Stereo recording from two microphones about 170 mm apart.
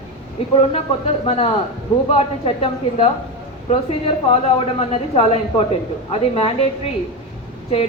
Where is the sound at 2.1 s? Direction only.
35° left (ahead or behind).